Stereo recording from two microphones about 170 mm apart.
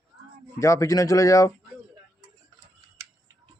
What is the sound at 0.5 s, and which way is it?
Speech, 20° left (ahead or behind).